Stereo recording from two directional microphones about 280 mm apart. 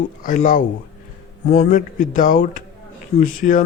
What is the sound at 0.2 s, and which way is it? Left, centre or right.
Speech, left.